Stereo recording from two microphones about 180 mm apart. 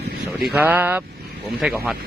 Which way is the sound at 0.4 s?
10° right (ahead or behind).